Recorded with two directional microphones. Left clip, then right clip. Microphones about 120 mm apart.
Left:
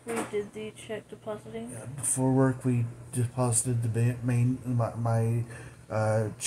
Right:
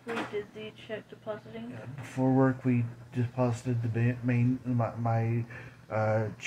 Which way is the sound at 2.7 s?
25° left (ahead or behind).